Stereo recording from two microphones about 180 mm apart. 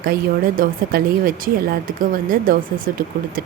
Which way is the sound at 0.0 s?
55° right (ahead or behind).